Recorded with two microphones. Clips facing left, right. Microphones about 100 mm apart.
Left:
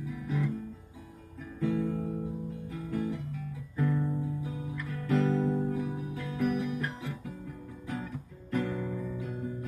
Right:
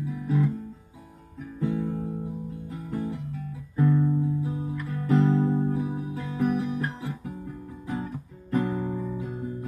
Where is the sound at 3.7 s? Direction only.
25° right (ahead or behind).